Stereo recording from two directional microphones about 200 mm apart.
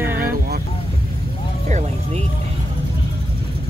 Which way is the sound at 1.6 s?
35° right (ahead or behind).